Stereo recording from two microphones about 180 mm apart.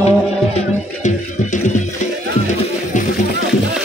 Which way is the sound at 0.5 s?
45° left (ahead or behind).